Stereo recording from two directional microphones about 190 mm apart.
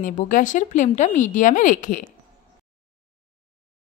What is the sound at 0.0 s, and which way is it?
Speech, 40° left (ahead or behind).